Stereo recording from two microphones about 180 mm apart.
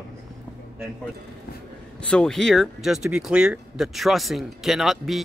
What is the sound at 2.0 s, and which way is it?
Speech, 5° left (ahead or behind).